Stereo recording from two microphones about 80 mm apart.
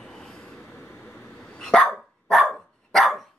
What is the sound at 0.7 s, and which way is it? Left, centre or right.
Vehicle, left.